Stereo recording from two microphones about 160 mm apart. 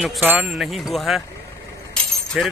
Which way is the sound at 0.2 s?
10° right (ahead or behind).